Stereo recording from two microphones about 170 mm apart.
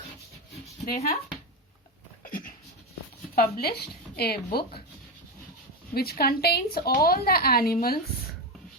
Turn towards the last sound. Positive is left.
turn(degrees=60)  # may be behind; listen again after turning